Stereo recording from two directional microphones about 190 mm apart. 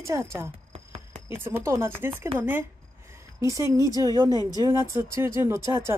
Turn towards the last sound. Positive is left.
turn(degrees=-15)  # may be behind; listen again after turning